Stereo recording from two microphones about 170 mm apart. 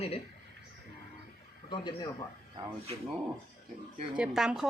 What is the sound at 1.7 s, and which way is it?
Speech, 25° left (ahead or behind).